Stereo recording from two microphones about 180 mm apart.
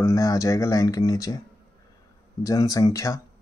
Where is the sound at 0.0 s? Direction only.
20° left (ahead or behind).